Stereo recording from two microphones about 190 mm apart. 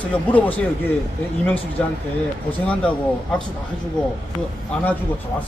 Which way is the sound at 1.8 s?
5° left (ahead or behind).